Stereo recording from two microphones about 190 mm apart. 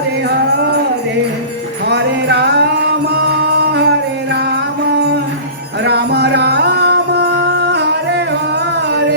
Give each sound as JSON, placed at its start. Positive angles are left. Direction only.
{"t": 1.9, "sound": "music", "side_deg": -60}
{"t": 4.9, "sound": "music", "side_deg": -60}